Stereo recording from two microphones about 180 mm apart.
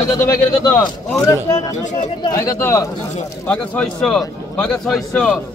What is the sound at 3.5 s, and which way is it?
A man's voice, 5° left (ahead or behind).